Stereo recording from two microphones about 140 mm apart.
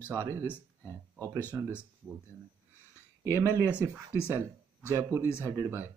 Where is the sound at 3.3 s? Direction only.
20° right (ahead or behind).